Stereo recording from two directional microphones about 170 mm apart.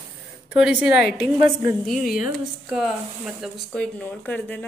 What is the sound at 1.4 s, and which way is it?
Speech, 30° right (ahead or behind).